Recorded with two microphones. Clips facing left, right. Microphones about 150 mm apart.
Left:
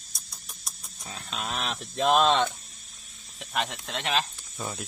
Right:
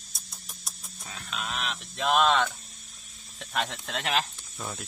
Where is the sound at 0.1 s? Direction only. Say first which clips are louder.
Even; centre (ahead or behind).